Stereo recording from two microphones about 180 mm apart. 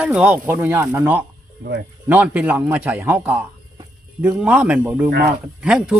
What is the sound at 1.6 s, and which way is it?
Speech, 60° right (ahead or behind).